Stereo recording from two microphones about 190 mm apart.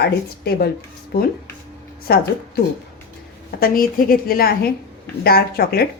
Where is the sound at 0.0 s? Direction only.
55° left (ahead or behind).